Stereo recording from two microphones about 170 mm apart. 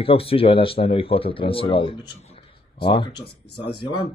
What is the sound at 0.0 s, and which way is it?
Speech, 35° left (ahead or behind).